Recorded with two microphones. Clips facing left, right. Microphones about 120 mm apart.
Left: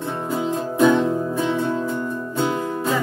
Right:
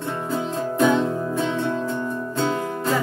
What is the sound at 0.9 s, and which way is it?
Music, 15° left (ahead or behind).